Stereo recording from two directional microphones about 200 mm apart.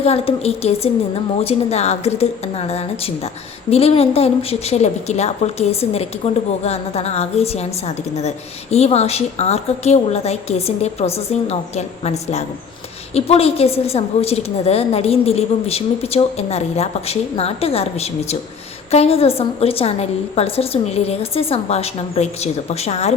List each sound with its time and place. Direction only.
0.0 s a woman's voice: 30° left (ahead or behind)